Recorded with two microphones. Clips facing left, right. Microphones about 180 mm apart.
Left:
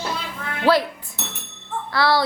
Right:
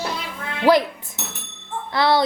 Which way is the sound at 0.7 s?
15° right (ahead or behind).